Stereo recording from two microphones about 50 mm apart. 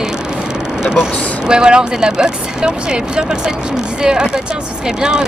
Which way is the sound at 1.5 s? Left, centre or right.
Centre.